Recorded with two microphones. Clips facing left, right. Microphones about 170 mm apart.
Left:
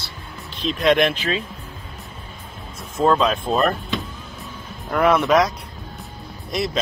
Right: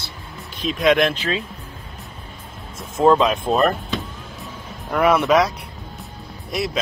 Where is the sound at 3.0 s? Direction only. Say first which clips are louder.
Right 3 dB; 15° right (ahead or behind).